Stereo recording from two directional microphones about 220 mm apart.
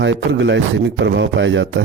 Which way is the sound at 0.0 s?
55° right (ahead or behind).